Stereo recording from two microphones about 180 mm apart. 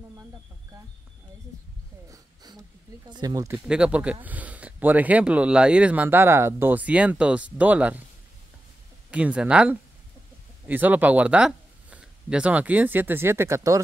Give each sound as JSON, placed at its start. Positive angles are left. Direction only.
{"t": 2.0, "sound": "wheeze", "side_deg": -20}
{"t": 3.1, "sound": "speech", "side_deg": -20}
{"t": 3.6, "sound": "speech", "side_deg": -5}
{"t": 9.1, "sound": "speech", "side_deg": -5}